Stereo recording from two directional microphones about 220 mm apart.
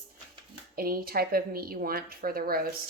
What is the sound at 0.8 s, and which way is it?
A woman's voice, 40° right (ahead or behind).